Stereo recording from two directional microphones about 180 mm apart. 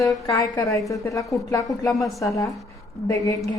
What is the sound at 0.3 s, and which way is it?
A woman's voice, 20° left (ahead or behind).